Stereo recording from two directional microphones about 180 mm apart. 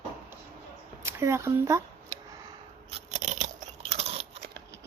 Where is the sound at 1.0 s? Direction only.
15° right (ahead or behind).